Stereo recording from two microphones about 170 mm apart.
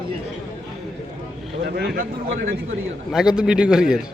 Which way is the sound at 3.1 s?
5° right (ahead or behind).